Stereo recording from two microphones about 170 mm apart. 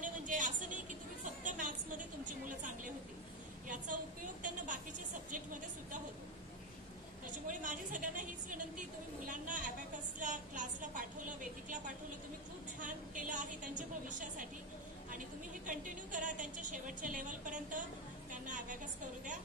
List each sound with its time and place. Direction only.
0.0 s vehicle: 50° right (ahead or behind)
2.4 s a sound: 50° right (ahead or behind)
7.4 s a woman's voice: 50° right (ahead or behind)
12.8 s a woman's voice: 50° right (ahead or behind)